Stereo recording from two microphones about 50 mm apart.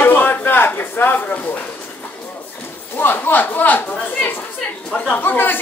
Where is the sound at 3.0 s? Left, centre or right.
Left.